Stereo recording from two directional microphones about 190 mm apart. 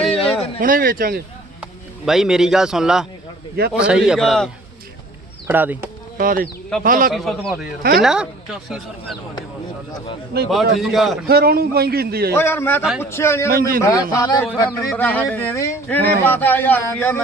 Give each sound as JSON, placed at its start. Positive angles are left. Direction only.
{"t": 0.1, "sound": "a sound", "side_deg": 30}
{"t": 0.6, "sound": "a man's voice", "side_deg": -50}
{"t": 2.0, "sound": "a man's voice", "side_deg": 0}
{"t": 5.5, "sound": "speech", "side_deg": -10}
{"t": 6.1, "sound": "a man's voice", "side_deg": -50}
{"t": 7.1, "sound": "a man's voice", "side_deg": 0}
{"t": 7.8, "sound": "a man's voice", "side_deg": -55}
{"t": 8.0, "sound": "a man's voice", "side_deg": -5}
{"t": 10.3, "sound": "a man's voice", "side_deg": -60}
{"t": 10.8, "sound": "a man's voice", "side_deg": 0}
{"t": 11.3, "sound": "a man's voice", "side_deg": -55}
{"t": 12.3, "sound": "speech", "side_deg": 10}
{"t": 13.5, "sound": "a man's voice", "side_deg": -50}
{"t": 13.8, "sound": "speech", "side_deg": 15}